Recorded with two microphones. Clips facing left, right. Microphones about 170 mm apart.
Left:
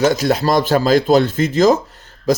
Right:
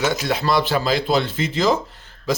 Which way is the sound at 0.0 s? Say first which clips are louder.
Left 6 dB; 40° left (ahead or behind).